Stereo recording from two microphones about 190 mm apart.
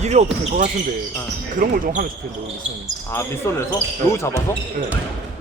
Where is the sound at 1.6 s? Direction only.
45° right (ahead or behind).